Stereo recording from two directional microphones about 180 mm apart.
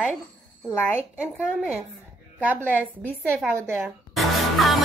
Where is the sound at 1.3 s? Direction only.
5° right (ahead or behind).